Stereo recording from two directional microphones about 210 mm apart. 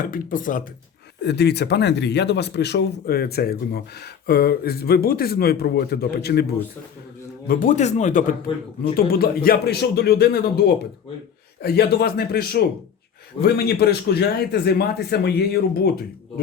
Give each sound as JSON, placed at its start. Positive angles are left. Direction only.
{"t": 0.0, "sound": "speech", "side_deg": 40}
{"t": 1.2, "sound": "speech", "side_deg": 50}
{"t": 7.4, "sound": "speech", "side_deg": 40}